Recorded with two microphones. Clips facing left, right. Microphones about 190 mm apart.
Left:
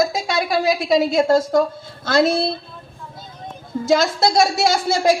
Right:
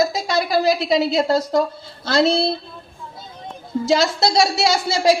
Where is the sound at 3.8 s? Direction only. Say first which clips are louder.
Left 1 dB; 50° left (ahead or behind).